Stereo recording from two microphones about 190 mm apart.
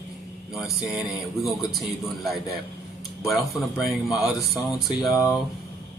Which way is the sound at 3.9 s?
Centre (ahead or behind).